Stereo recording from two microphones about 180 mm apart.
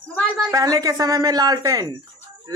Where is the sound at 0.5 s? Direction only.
20° right (ahead or behind).